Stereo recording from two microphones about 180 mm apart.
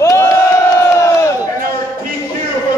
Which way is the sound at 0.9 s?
15° left (ahead or behind).